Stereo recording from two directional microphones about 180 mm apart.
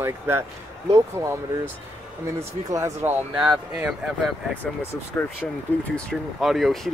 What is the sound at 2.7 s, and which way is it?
Speech, 15° right (ahead or behind).